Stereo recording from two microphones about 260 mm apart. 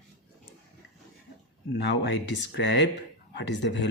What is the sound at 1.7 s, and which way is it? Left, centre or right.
Speech, left.